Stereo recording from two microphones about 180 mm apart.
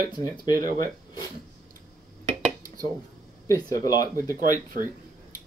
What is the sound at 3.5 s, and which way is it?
Speech, 20° left (ahead or behind).